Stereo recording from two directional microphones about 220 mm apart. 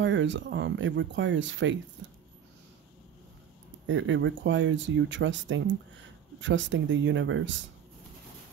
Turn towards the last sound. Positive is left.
turn(degrees=-60)  # may be behind; listen again after turning